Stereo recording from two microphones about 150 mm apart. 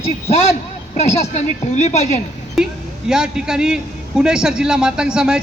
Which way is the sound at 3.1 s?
5° right (ahead or behind).